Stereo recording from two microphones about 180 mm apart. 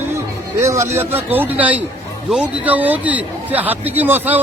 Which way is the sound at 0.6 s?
15° right (ahead or behind).